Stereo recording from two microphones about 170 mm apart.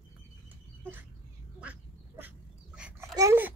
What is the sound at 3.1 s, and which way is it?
Babbling, 15° right (ahead or behind).